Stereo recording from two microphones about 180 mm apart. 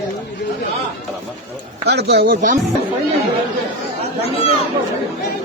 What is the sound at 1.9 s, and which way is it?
Chopping, 65° right (ahead or behind).